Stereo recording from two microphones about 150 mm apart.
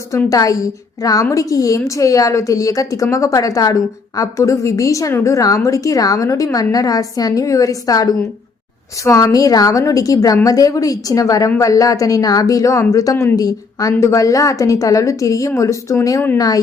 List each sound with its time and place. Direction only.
0.1 s a woman's voice: 20° left (ahead or behind)